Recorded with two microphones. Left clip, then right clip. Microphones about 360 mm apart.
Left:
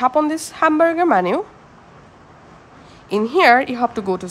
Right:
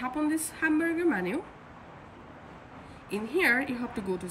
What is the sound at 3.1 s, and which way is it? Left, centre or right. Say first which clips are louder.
A woman's voice: left 14 dB; centre.